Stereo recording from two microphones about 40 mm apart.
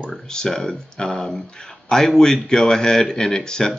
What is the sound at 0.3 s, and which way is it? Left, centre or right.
Speech, centre.